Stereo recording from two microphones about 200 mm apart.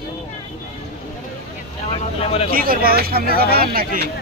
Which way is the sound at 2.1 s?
30° left (ahead or behind).